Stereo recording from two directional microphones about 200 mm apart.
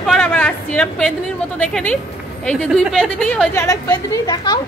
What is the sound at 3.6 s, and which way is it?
A woman's voice, 15° left (ahead or behind).